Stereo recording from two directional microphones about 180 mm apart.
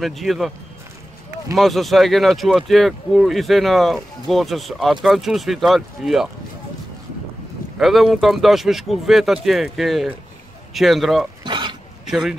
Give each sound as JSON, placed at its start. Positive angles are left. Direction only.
{"t": 0.0, "sound": "speech", "side_deg": 0}
{"t": 1.6, "sound": "speech", "side_deg": 0}
{"t": 7.8, "sound": "speech", "side_deg": 0}
{"t": 11.4, "sound": "throat clearing", "side_deg": -25}
{"t": 12.1, "sound": "speech", "side_deg": -5}